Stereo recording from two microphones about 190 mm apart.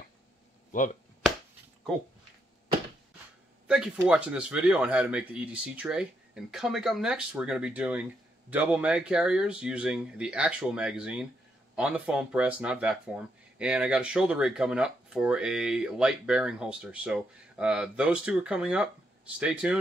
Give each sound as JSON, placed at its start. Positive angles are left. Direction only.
{"t": 0.7, "sound": "speech", "side_deg": 45}
{"t": 3.6, "sound": "speech", "side_deg": -5}